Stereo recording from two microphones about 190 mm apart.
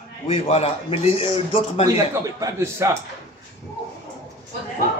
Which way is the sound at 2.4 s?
15° right (ahead or behind).